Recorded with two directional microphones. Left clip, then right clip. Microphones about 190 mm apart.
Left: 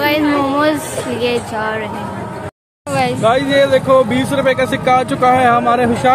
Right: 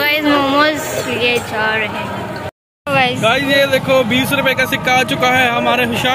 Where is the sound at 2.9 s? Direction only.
10° left (ahead or behind).